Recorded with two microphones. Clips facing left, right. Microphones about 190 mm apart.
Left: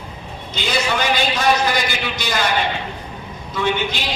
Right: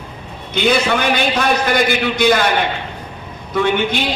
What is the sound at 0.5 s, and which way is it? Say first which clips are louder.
A man's voice: right 6 dB; 60° right (ahead or behind).